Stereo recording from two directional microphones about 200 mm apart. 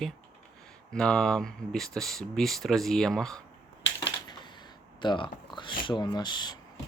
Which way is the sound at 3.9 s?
20° left (ahead or behind).